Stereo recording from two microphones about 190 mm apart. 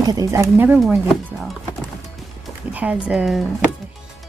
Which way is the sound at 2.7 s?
5° right (ahead or behind).